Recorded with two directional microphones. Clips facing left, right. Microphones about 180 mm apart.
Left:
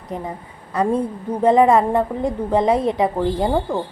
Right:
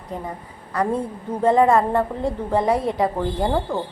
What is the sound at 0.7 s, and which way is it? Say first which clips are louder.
A woman's voice: left 3 dB; 20° left (ahead or behind).